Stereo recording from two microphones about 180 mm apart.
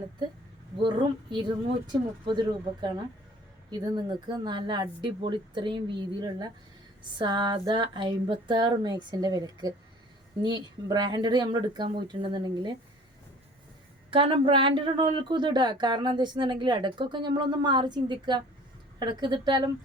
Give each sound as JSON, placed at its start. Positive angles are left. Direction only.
{"t": 0.8, "sound": "speech", "side_deg": -25}
{"t": 14.1, "sound": "speech", "side_deg": -30}